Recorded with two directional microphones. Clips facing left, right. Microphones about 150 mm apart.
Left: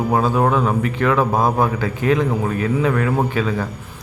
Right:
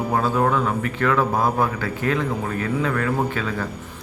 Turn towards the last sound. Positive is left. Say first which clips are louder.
# left 4 dB
turn(degrees=15)  # may be behind; listen again after turning